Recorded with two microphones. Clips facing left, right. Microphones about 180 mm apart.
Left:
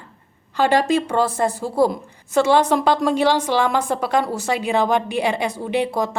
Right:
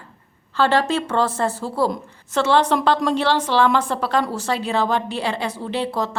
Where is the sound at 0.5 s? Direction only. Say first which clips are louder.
Left 2 dB; 15° left (ahead or behind).